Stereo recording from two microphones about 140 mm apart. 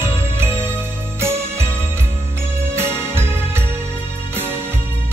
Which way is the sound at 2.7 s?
15° right (ahead or behind).